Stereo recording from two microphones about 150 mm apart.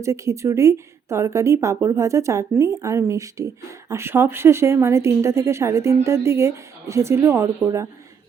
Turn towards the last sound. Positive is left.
turn(degrees=-20)  # may be behind; listen again after turning